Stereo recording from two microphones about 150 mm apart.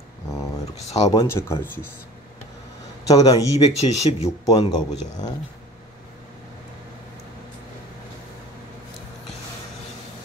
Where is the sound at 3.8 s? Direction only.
45° left (ahead or behind).